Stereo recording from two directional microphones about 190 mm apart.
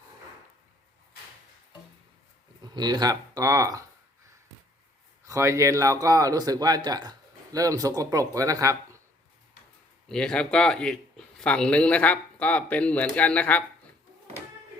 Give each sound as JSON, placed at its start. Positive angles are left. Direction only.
{"t": 2.7, "sound": "speech", "side_deg": -20}
{"t": 5.2, "sound": "speech", "side_deg": -15}
{"t": 10.1, "sound": "speech", "side_deg": 5}